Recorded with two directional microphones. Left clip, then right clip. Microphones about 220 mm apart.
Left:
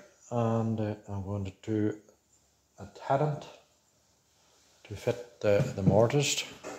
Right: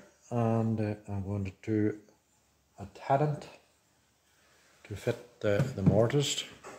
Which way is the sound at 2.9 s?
35° right (ahead or behind).